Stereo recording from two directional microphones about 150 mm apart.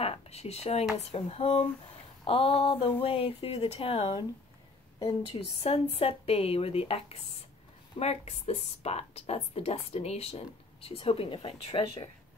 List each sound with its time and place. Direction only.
0.0 s speech: 40° left (ahead or behind)
5.6 s speech: 40° left (ahead or behind)